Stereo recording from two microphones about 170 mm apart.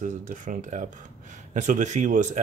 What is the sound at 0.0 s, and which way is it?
Speech, 50° right (ahead or behind).